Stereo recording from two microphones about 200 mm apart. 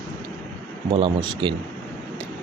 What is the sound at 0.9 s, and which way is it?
Speech, 25° right (ahead or behind).